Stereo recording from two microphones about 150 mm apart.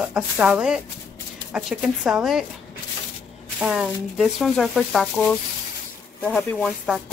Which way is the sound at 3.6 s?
5° right (ahead or behind).